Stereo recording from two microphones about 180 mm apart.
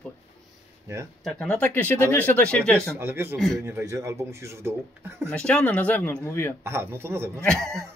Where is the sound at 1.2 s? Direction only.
5° left (ahead or behind).